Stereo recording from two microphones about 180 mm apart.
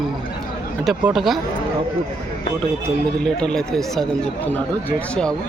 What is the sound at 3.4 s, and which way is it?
Speech, 5° left (ahead or behind).